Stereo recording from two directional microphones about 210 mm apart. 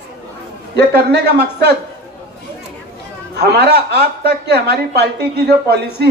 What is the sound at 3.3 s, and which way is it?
A woman's voice, 50° right (ahead or behind).